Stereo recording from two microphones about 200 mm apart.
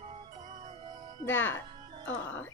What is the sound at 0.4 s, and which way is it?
Music, 35° right (ahead or behind).